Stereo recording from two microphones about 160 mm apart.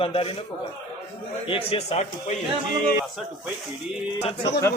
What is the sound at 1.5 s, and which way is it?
Speech, 40° left (ahead or behind).